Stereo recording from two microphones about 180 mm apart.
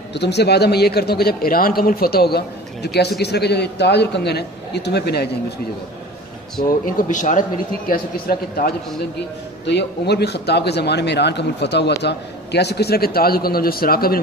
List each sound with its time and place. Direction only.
0.1 s speech: 70° left (ahead or behind)
6.7 s speech: 45° left (ahead or behind)
9.7 s a man's voice: 70° left (ahead or behind)